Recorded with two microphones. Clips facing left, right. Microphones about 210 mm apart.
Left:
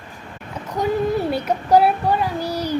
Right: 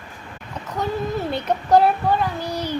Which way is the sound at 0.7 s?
10° left (ahead or behind).